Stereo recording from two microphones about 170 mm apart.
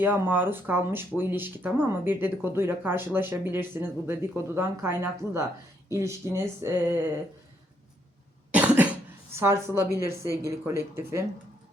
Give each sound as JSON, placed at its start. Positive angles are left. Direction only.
{"t": 0.0, "sound": "speech", "side_deg": -10}
{"t": 8.5, "sound": "speech", "side_deg": -10}